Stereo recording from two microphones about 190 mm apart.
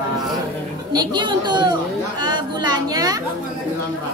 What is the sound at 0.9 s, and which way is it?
Speech, 25° right (ahead or behind).